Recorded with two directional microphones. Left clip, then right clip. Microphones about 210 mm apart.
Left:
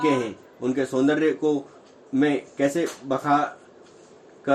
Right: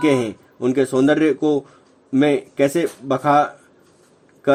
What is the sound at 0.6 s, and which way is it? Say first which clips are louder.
Speech: right 6 dB; 45° right (ahead or behind).